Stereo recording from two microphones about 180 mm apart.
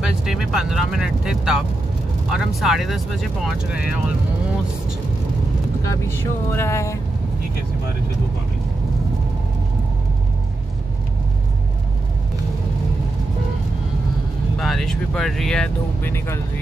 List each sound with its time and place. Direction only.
0.0 s speech: 5° right (ahead or behind)
5.9 s speech: 15° left (ahead or behind)
14.6 s speech: centre (ahead or behind)